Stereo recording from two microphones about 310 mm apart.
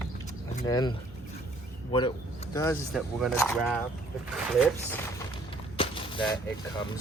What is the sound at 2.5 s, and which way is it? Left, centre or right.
Speech, centre.